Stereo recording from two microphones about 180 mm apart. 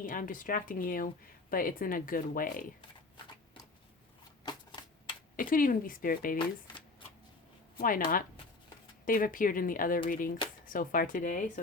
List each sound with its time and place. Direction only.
0.0 s speech: 50° left (ahead or behind)
5.4 s speech: 50° left (ahead or behind)
7.8 s speech: 50° left (ahead or behind)